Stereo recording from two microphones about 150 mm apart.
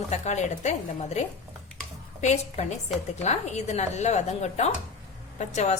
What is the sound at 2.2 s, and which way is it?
A woman's voice, 50° left (ahead or behind).